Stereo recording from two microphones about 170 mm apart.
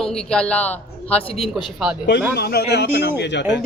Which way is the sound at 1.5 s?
Centre (ahead or behind).